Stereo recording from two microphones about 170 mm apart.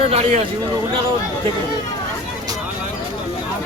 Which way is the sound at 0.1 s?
40° right (ahead or behind).